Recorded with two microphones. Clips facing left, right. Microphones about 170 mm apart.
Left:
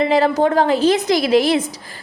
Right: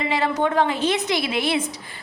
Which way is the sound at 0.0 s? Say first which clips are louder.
Left 7 dB; 35° left (ahead or behind).